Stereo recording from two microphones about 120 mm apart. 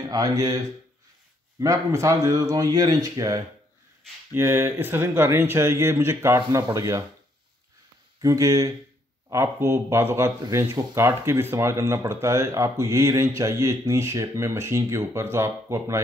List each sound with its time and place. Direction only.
0.1 s speech: 30° right (ahead or behind)
4.3 s speech: 20° right (ahead or behind)
8.2 s speech: 25° right (ahead or behind)